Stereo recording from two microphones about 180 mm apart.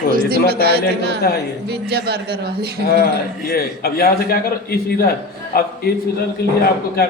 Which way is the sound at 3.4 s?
60° left (ahead or behind).